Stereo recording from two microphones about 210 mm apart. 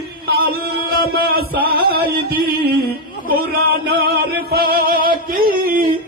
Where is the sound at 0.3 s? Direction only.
45° right (ahead or behind).